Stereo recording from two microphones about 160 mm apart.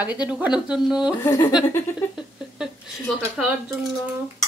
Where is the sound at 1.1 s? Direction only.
15° left (ahead or behind).